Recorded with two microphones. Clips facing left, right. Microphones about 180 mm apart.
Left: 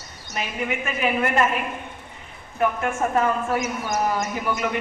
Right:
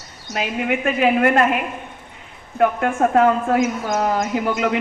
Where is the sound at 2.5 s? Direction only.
60° right (ahead or behind).